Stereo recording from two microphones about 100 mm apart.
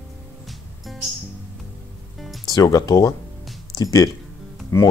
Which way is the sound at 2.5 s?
35° left (ahead or behind).